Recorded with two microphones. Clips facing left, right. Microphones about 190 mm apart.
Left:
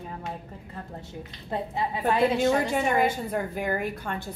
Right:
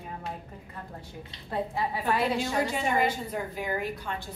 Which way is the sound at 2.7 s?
50° left (ahead or behind).